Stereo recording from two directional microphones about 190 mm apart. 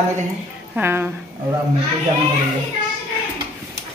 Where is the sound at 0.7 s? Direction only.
10° right (ahead or behind).